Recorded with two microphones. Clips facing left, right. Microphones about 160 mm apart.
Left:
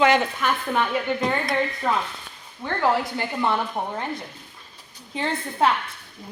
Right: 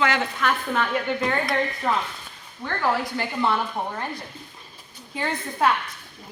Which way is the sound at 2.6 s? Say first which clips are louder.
Left 2 dB; 20° left (ahead or behind).